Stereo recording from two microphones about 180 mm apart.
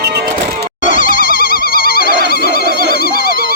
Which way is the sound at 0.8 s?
45° left (ahead or behind).